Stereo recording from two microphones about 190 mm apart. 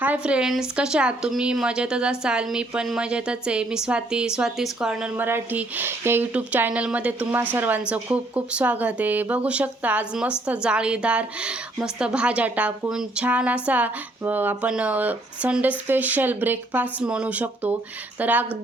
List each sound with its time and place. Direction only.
0.0 s a woman's voice: 5° right (ahead or behind)